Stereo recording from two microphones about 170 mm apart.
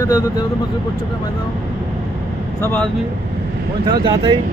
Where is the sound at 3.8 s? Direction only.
25° right (ahead or behind).